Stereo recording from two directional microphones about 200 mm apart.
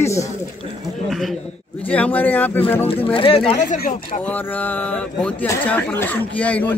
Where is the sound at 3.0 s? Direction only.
25° left (ahead or behind).